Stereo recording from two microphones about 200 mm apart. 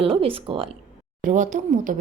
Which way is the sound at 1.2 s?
40° right (ahead or behind).